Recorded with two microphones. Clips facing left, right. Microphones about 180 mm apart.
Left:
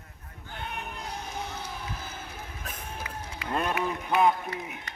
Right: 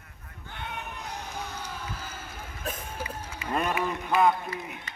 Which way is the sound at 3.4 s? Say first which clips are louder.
Right 1 dB; centre (ahead or behind).